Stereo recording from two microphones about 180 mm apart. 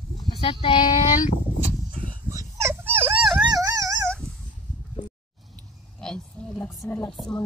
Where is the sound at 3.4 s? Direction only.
20° right (ahead or behind).